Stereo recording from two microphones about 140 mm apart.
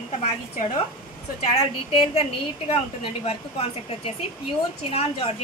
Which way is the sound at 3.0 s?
45° left (ahead or behind).